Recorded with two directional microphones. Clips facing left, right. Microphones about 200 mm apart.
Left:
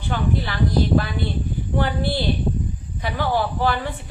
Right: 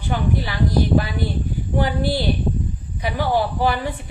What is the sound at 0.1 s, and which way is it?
Speech, 15° right (ahead or behind).